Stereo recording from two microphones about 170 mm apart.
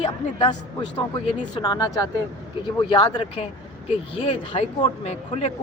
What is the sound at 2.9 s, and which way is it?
Speech, 25° left (ahead or behind).